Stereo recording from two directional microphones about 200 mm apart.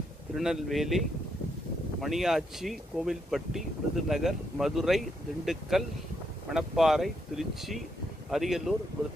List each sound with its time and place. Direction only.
0.4 s speech: centre (ahead or behind)